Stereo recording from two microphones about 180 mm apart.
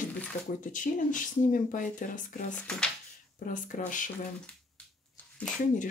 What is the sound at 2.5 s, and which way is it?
Speech, 5° left (ahead or behind).